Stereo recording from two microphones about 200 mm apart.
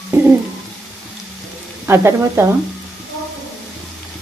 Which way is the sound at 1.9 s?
10° right (ahead or behind).